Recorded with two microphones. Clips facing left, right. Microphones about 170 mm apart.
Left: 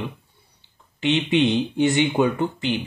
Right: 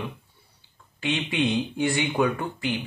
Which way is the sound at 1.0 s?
20° left (ahead or behind).